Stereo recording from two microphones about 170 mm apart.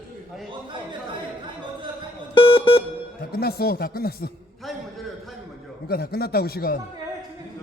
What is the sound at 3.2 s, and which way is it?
Speech, 65° left (ahead or behind).